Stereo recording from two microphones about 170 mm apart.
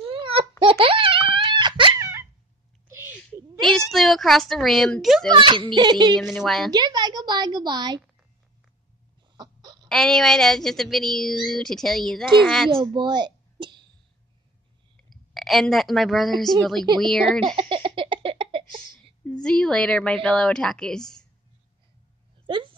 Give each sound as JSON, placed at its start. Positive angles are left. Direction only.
{"t": 0.0, "sound": "wail", "side_deg": -30}
{"t": 2.0, "sound": "a sound", "side_deg": -15}
{"t": 3.6, "sound": "a child's voice", "side_deg": 0}
{"t": 5.3, "sound": "a woman's voice", "side_deg": -30}
{"t": 6.1, "sound": "a woman's voice", "side_deg": 0}
{"t": 6.7, "sound": "a woman's voice", "side_deg": -25}
{"t": 9.4, "sound": "a sound", "side_deg": -25}
{"t": 9.8, "sound": "a woman's voice", "side_deg": 0}
{"t": 12.9, "sound": "a sound", "side_deg": -25}
{"t": 15.0, "sound": "a woman's voice", "side_deg": 0}
{"t": 17.6, "sound": "a sound", "side_deg": -30}
{"t": 19.4, "sound": "a woman's voice", "side_deg": 5}